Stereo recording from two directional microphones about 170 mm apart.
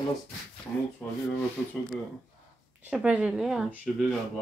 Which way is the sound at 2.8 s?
5° right (ahead or behind).